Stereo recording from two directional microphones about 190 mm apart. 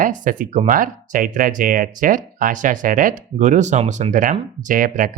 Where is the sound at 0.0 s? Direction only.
45° right (ahead or behind).